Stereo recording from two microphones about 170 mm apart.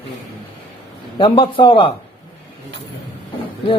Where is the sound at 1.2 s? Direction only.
30° left (ahead or behind).